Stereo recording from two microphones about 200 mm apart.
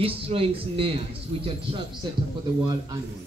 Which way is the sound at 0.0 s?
30° right (ahead or behind).